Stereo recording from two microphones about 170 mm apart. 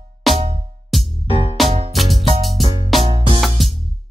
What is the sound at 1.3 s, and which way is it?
Music, 35° left (ahead or behind).